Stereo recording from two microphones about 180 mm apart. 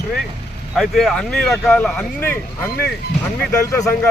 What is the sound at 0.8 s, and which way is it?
Speech, centre (ahead or behind).